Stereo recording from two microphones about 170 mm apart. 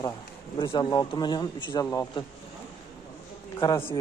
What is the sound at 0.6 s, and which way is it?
A man's voice, 30° left (ahead or behind).